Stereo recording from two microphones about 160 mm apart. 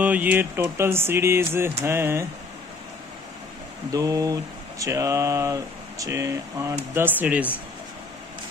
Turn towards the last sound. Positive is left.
turn(degrees=-10)  # may be behind; listen again after turning